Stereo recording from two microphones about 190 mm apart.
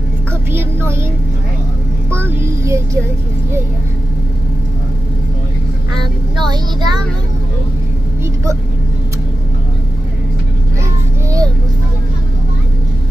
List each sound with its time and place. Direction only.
0.5 s music: 10° right (ahead or behind)
2.0 s music: 15° right (ahead or behind)
5.9 s vehicle: 20° right (ahead or behind)
11.2 s vehicle: 20° right (ahead or behind)